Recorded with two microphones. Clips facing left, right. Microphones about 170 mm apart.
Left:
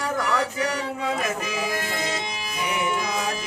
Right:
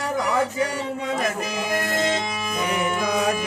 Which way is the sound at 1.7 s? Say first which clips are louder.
Right 5 dB; 50° right (ahead or behind).